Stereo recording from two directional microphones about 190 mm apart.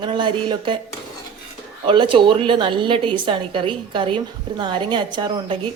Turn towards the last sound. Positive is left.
turn(degrees=-25)  # may be behind; listen again after turning